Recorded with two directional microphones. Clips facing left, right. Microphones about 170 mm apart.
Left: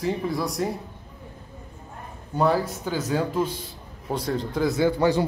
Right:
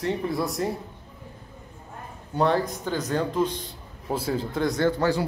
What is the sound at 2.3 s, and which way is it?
Speech, 5° left (ahead or behind).